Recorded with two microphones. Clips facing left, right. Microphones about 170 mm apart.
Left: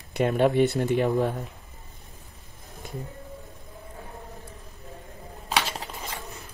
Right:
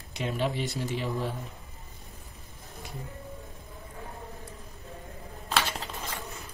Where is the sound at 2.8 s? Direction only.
50° left (ahead or behind).